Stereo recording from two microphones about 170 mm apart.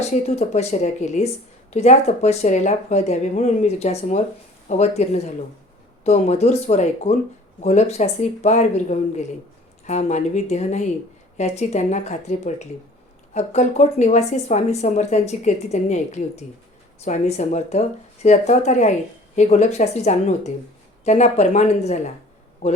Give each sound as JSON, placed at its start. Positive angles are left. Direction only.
{"t": 0.0, "sound": "speech", "side_deg": 40}